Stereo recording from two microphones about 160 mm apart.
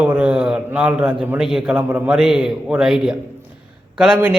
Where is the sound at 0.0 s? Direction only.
5° right (ahead or behind).